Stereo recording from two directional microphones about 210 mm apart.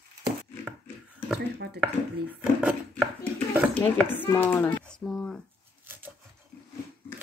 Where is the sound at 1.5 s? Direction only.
55° right (ahead or behind).